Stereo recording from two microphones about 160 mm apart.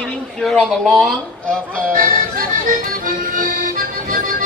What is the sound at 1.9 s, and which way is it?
Accordion, 60° right (ahead or behind).